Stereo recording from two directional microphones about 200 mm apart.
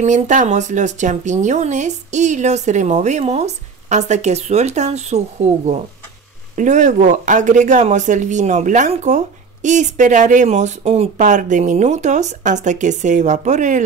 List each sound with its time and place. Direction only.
0.0 s speech: 40° right (ahead or behind)